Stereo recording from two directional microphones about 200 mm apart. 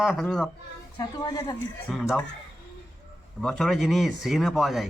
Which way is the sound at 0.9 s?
20° left (ahead or behind).